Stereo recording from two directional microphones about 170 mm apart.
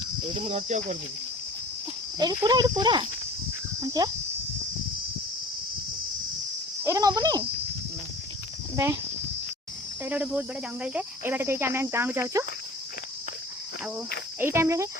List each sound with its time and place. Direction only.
0.3 s speech: 35° right (ahead or behind)
2.1 s speech: 25° right (ahead or behind)
6.8 s a sound: 20° right (ahead or behind)
8.7 s speech: 20° right (ahead or behind)
10.0 s speech: 10° right (ahead or behind)
14.3 s speech: 15° right (ahead or behind)